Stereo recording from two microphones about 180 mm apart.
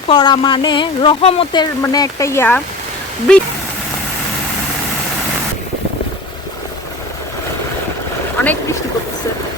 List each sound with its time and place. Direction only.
0.1 s speech: 25° left (ahead or behind)
1.8 s speech: 20° left (ahead or behind)
8.4 s boat: 10° left (ahead or behind)